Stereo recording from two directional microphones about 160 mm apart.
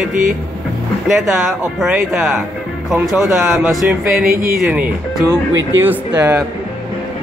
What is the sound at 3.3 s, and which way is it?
Speech, 15° right (ahead or behind).